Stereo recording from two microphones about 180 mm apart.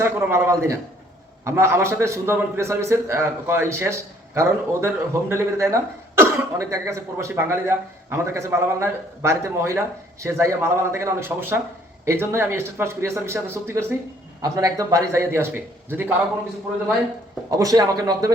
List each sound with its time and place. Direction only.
0.0 s speech: 15° right (ahead or behind)
17.5 s speech: 20° right (ahead or behind)